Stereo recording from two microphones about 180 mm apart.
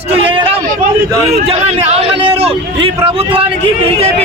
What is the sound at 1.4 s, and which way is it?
A man's voice, 35° right (ahead or behind).